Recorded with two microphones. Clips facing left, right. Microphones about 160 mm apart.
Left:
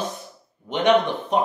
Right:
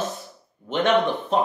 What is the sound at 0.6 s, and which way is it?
Speech, 15° left (ahead or behind).